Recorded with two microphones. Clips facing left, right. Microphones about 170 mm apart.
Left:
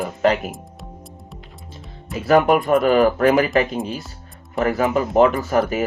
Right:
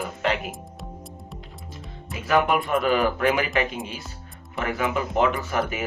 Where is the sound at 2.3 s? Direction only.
40° left (ahead or behind).